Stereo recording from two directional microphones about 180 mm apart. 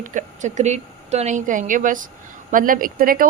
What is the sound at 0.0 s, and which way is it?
Speech, 45° right (ahead or behind).